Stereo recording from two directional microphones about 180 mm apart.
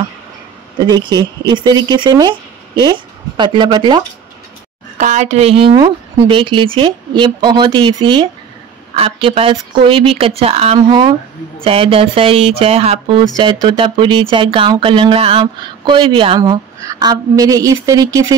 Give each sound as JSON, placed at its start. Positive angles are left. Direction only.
{"t": 0.8, "sound": "speech", "side_deg": -25}
{"t": 5.0, "sound": "speech", "side_deg": -40}